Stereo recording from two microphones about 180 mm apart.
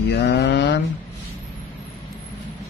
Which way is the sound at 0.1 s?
70° left (ahead or behind).